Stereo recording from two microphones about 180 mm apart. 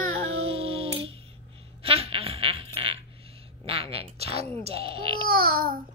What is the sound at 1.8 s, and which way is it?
Fart, 35° right (ahead or behind).